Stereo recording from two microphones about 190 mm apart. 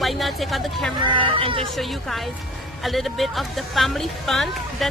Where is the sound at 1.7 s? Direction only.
Centre (ahead or behind).